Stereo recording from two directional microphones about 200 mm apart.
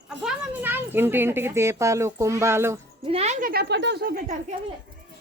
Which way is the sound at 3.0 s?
30° right (ahead or behind).